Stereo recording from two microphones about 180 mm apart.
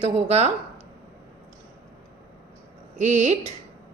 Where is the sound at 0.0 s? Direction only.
35° right (ahead or behind).